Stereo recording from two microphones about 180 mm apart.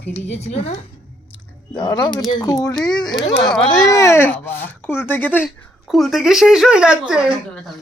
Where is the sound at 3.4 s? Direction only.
5° left (ahead or behind).